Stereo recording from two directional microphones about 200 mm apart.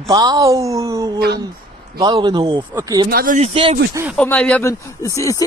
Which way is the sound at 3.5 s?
30° right (ahead or behind).